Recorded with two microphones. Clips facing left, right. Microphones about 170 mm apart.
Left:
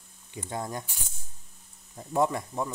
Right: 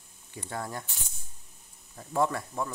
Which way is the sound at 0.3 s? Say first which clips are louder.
Left 2 dB; 20° left (ahead or behind).